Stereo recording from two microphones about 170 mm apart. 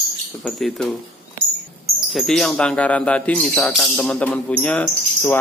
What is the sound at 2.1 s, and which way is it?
Speech, centre (ahead or behind).